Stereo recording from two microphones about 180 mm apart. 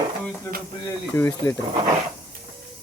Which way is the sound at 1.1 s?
15° left (ahead or behind).